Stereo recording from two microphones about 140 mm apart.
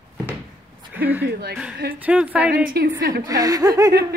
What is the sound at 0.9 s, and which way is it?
Speech, 15° right (ahead or behind).